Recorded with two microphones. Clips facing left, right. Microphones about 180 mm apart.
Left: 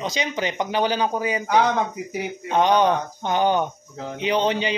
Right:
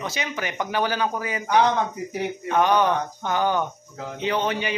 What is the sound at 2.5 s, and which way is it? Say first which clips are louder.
Speech: left 2 dB; 20° left (ahead or behind).